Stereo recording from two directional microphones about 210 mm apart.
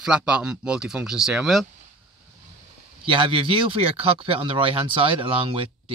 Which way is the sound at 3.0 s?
25° right (ahead or behind).